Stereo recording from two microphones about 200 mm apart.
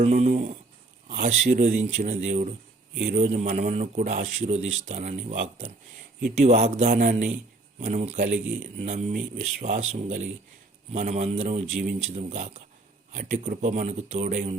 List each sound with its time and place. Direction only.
0.0 s a sound: 35° right (ahead or behind)
1.0 s a sound: 50° right (ahead or behind)
1.5 s a man's voice: 50° right (ahead or behind)
1.8 s speech: 35° right (ahead or behind)
3.0 s a man's voice: 50° right (ahead or behind)
3.2 s speech: 35° right (ahead or behind)
6.8 s a man's voice: 50° right (ahead or behind)
7.1 s speech: 35° right (ahead or behind)